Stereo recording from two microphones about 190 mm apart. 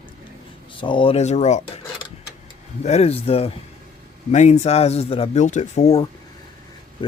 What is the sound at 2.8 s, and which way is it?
Speech, 35° left (ahead or behind).